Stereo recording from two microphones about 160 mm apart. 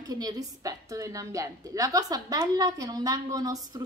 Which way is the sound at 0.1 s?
25° right (ahead or behind).